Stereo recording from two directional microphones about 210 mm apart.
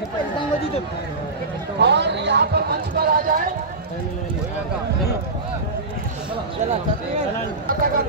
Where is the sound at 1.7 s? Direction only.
55° right (ahead or behind).